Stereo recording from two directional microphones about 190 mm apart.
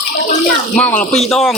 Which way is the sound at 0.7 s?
5° left (ahead or behind).